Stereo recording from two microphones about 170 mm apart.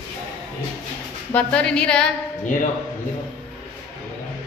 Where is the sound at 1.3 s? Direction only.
5° left (ahead or behind).